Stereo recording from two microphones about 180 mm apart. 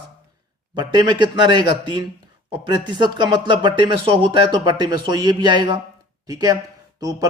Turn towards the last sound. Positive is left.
turn(degrees=-20)  # may be behind; listen again after turning